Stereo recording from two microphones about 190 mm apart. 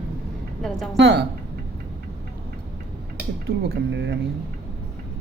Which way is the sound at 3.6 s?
60° right (ahead or behind).